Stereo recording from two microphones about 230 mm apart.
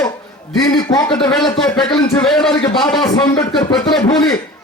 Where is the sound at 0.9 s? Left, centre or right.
Centre.